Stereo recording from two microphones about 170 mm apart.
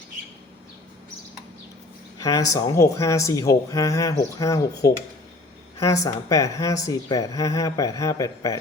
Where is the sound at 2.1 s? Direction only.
20° left (ahead or behind).